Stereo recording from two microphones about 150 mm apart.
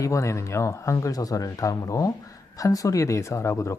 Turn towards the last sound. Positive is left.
turn(degrees=20)  # may be behind; listen again after turning